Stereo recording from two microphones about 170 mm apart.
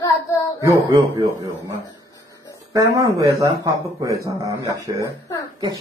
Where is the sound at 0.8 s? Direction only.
25° right (ahead or behind).